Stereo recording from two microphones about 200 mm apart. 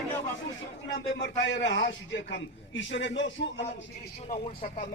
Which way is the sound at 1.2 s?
65° left (ahead or behind).